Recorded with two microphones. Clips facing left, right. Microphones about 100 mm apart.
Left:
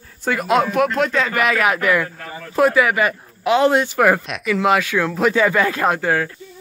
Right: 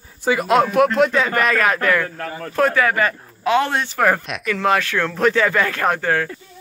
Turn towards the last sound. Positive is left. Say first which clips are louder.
# left 1 dB
turn(degrees=10)  # may be behind; listen again after turning